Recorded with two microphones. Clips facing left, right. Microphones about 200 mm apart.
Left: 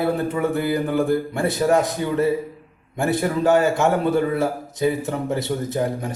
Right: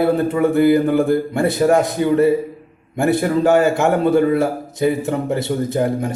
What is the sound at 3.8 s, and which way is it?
Speech, 60° right (ahead or behind).